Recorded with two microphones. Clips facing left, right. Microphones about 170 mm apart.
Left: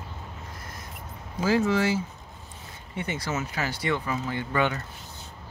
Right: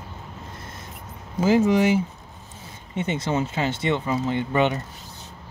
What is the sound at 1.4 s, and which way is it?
Speech, 20° right (ahead or behind).